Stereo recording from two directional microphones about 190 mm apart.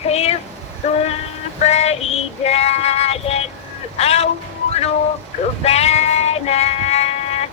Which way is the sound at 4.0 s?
30° left (ahead or behind).